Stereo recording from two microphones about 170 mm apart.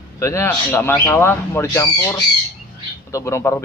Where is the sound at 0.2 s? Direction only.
15° left (ahead or behind).